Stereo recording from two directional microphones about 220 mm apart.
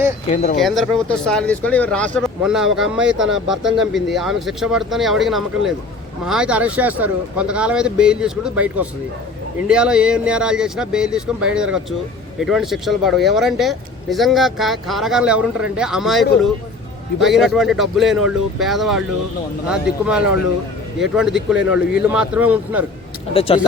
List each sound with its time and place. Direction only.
0.5 s speech: centre (ahead or behind)
23.3 s speech: 25° left (ahead or behind)